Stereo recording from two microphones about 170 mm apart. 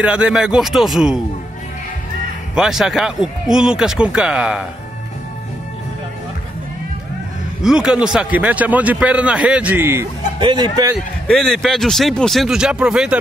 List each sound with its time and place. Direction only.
0.0 s speech: 5° right (ahead or behind)
2.5 s speech: 5° right (ahead or behind)
7.6 s a man's voice: 5° right (ahead or behind)
10.4 s speech: 25° right (ahead or behind)
11.2 s speech: centre (ahead or behind)